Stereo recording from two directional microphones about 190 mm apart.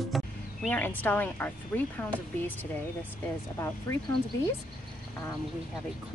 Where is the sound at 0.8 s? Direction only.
10° left (ahead or behind).